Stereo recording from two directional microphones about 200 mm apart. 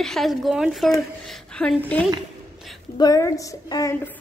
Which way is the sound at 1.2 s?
5° left (ahead or behind).